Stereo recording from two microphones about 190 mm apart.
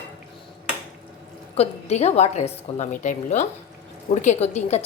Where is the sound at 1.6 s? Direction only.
35° left (ahead or behind).